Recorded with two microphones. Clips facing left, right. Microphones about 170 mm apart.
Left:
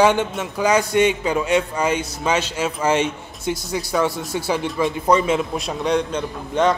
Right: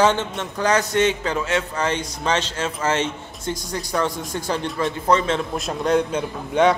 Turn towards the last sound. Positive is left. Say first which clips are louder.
# right 1 dB
turn(degrees=-5)  # may be behind; listen again after turning